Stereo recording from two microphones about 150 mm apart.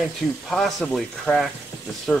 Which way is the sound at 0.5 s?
Centre (ahead or behind).